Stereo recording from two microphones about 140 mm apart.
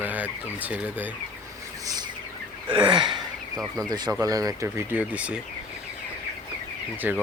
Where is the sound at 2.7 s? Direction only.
35° right (ahead or behind).